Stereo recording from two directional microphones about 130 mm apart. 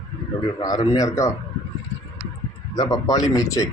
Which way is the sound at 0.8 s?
25° left (ahead or behind).